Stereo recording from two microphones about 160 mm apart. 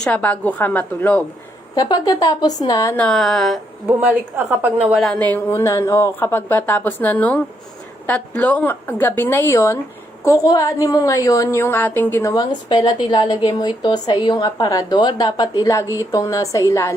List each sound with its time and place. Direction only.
0.0 s a woman's voice: 10° left (ahead or behind)
1.7 s a woman's voice: 25° left (ahead or behind)
2.9 s a woman's voice: 5° left (ahead or behind)
4.0 s a woman's voice: 10° right (ahead or behind)
5.0 s a woman's voice: 10° left (ahead or behind)
12.3 s a woman's voice: 25° left (ahead or behind)